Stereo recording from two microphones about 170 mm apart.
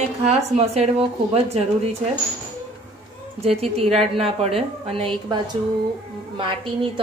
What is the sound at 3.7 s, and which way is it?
A woman's voice, 35° right (ahead or behind).